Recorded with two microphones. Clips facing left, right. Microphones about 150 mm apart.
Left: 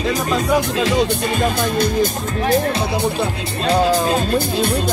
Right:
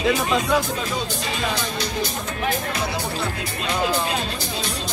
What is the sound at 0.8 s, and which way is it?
Speech, 85° left.